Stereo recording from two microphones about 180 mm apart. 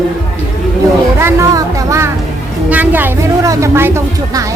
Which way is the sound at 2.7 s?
10° right (ahead or behind).